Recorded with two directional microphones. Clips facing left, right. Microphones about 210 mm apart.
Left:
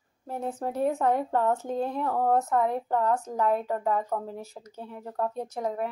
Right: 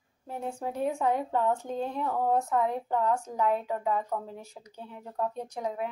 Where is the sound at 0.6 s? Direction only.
40° left (ahead or behind).